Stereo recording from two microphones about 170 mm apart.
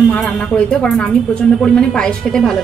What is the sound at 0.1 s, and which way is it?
A woman's voice, 5° left (ahead or behind).